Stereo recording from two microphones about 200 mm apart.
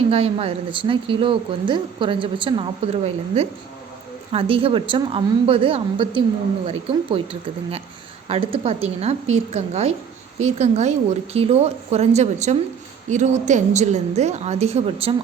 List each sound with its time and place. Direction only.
0.1 s a woman's voice: 30° right (ahead or behind)
8.3 s a woman's voice: 30° right (ahead or behind)